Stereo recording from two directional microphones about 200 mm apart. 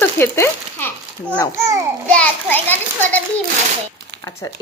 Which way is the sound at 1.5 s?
15° right (ahead or behind).